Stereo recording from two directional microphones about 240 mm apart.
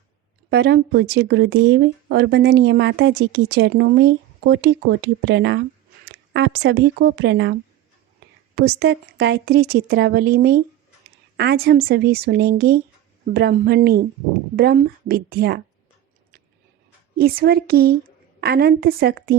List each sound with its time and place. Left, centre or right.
0.5 s speech: right
17.2 s speech: right